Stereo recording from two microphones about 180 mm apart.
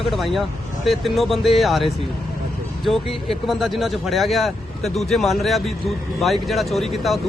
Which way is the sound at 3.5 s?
Centre (ahead or behind).